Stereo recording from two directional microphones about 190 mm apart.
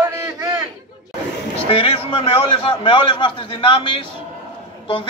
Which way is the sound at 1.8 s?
30° left (ahead or behind).